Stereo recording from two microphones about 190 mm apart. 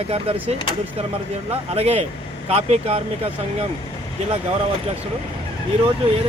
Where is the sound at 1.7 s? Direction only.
35° right (ahead or behind).